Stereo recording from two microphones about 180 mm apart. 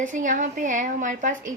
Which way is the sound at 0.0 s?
45° right (ahead or behind).